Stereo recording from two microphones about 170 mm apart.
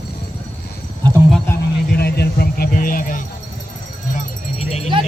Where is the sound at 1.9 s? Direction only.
65° left (ahead or behind).